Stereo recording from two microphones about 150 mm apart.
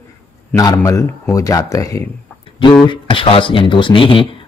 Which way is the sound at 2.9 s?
35° left (ahead or behind).